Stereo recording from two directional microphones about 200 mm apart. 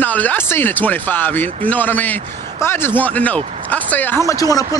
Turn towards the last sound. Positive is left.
turn(degrees=15)  # may be behind; listen again after turning